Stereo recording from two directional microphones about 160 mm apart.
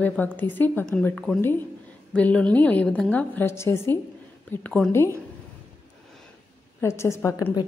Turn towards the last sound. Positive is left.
turn(degrees=20)  # may be behind; listen again after turning